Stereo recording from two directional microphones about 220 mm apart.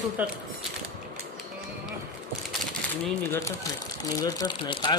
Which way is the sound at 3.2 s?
15° left (ahead or behind).